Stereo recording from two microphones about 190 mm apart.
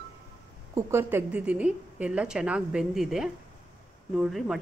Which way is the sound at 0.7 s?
10° right (ahead or behind).